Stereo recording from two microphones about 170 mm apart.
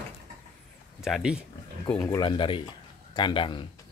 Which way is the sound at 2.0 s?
25° left (ahead or behind).